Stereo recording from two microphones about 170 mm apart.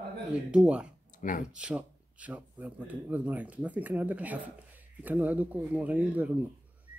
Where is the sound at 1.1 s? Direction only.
50° left (ahead or behind).